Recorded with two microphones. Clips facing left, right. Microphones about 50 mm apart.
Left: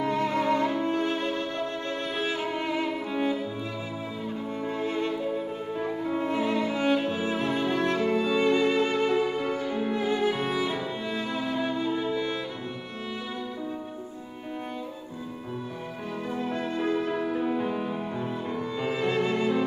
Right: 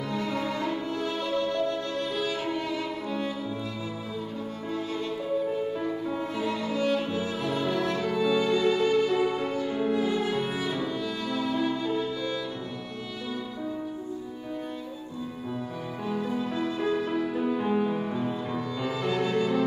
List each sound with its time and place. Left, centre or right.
0.0 s music: left
5.7 s music: left
16.1 s music: left
17.3 s music: centre
17.6 s music: centre
18.1 s music: centre